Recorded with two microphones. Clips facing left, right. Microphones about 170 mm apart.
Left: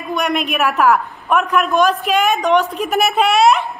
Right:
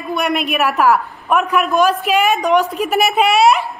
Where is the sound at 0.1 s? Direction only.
5° right (ahead or behind).